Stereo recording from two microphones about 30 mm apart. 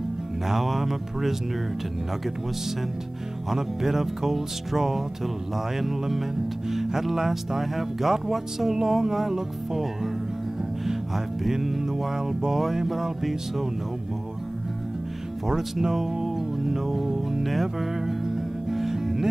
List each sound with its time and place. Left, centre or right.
0.5 s speech: centre
3.4 s speech: centre
11.5 s music: centre
12.7 s speech: centre
15.4 s music: centre